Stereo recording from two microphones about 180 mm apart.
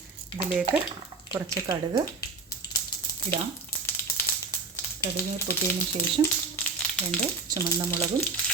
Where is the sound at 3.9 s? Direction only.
10° left (ahead or behind).